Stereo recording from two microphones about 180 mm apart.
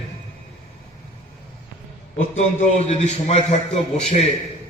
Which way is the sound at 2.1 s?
40° left (ahead or behind).